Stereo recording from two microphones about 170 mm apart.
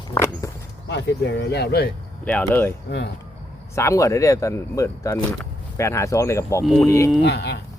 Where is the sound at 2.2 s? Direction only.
10° left (ahead or behind).